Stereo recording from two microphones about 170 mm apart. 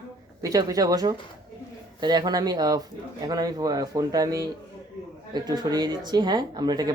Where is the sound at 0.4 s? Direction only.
20° right (ahead or behind).